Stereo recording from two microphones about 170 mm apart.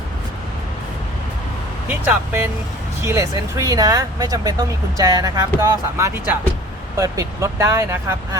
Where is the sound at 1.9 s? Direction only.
10° right (ahead or behind).